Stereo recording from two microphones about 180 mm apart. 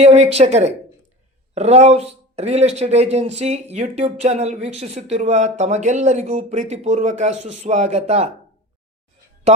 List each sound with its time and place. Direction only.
0.0 s speech: 35° right (ahead or behind)